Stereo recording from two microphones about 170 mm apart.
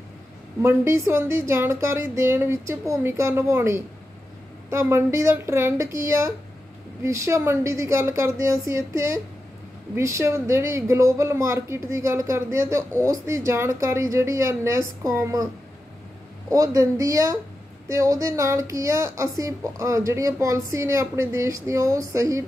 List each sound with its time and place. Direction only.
0.6 s a woman's voice: 15° right (ahead or behind)